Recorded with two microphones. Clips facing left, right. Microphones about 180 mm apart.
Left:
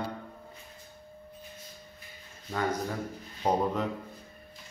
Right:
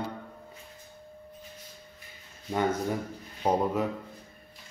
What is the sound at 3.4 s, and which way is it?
Speech, 10° right (ahead or behind).